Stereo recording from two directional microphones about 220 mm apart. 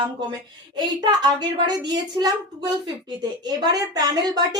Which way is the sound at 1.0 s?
20° right (ahead or behind).